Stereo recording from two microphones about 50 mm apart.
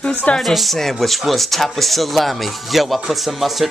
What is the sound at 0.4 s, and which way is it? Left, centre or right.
Speech, centre.